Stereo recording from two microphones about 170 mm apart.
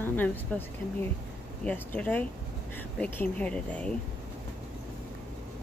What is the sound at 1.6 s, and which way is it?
Speech, 10° left (ahead or behind).